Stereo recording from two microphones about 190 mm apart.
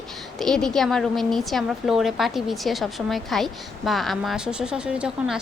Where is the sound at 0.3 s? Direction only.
5° left (ahead or behind).